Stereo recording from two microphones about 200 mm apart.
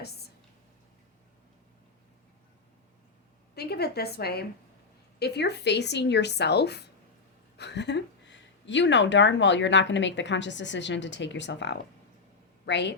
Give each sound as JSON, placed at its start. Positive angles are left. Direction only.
{"t": 3.5, "sound": "a woman's voice", "side_deg": 55}